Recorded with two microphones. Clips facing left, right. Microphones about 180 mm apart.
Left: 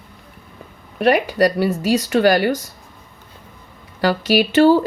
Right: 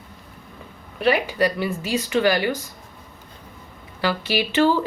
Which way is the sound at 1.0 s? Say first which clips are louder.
Left 5 dB; 45° left (ahead or behind).